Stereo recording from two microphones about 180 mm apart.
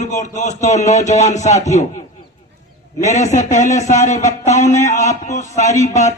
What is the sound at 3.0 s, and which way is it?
Speech, 40° left (ahead or behind).